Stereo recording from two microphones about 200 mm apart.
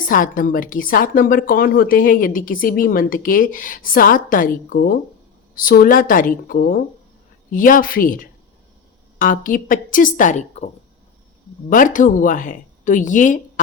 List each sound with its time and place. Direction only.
0.1 s a woman's voice: 45° left (ahead or behind)
11.7 s a woman's voice: 40° left (ahead or behind)